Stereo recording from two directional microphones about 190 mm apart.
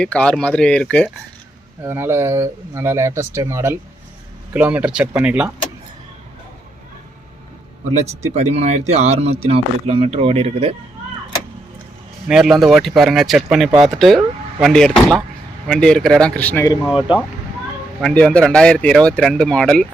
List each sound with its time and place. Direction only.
0.0 s speech: 5° left (ahead or behind)
1.8 s speech: 10° right (ahead or behind)
8.3 s speech: 35° right (ahead or behind)
12.3 s speech: centre (ahead or behind)
16.8 s speech: 5° right (ahead or behind)